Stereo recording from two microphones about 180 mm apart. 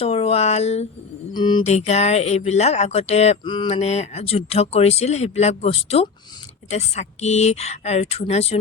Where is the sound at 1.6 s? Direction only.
35° left (ahead or behind).